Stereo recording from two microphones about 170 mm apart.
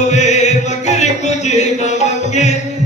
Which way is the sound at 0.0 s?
40° left (ahead or behind).